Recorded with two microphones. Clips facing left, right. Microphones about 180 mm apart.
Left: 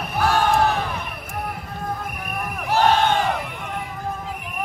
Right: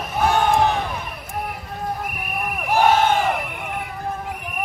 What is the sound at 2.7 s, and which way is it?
Battle cry, 10° right (ahead or behind).